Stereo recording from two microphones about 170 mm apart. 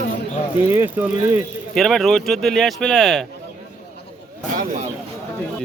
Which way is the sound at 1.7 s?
Centre (ahead or behind).